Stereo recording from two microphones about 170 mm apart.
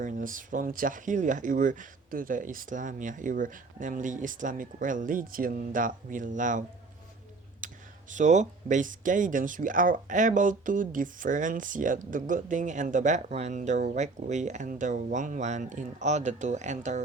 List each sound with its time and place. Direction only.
0.0 s speech: 50° right (ahead or behind)
7.6 s a sound: 50° right (ahead or behind)
8.1 s speech: 45° right (ahead or behind)